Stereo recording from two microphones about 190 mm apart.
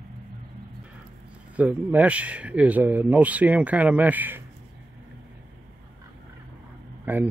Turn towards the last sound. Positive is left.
turn(degrees=-10)  # may be behind; listen again after turning